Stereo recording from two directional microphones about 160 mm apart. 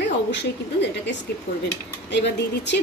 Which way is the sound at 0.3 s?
90° left.